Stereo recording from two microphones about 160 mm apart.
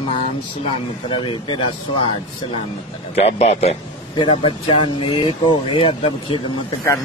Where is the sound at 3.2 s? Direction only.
40° left (ahead or behind).